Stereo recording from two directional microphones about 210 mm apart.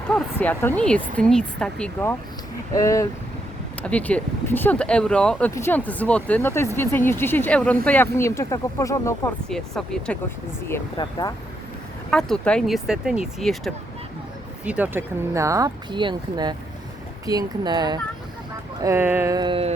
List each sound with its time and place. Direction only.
0.1 s speech: 5° left (ahead or behind)
9.5 s speech: centre (ahead or behind)
10.9 s speech: 20° left (ahead or behind)
12.1 s speech: 5° left (ahead or behind); by 19.7 s 25° right (ahead or behind)